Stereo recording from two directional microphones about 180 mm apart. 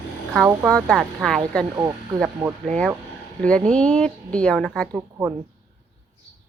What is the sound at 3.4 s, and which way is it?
Speech, 5° left (ahead or behind).